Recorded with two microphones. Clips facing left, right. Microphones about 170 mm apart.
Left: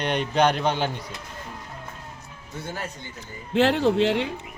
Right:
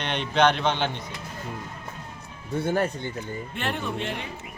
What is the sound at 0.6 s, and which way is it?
Speech, 5° left (ahead or behind).